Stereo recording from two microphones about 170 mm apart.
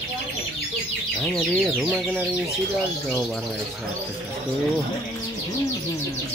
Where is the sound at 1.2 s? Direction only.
Centre (ahead or behind).